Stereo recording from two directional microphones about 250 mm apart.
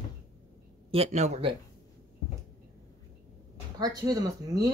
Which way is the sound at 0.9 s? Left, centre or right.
Right.